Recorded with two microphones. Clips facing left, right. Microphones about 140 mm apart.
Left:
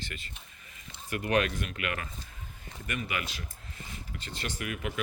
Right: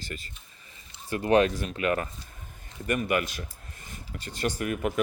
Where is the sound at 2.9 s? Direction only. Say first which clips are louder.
Right 9 dB; 45° right (ahead or behind).